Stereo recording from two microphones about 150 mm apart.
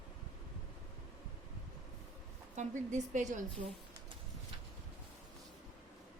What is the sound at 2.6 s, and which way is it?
Speech, 55° right (ahead or behind).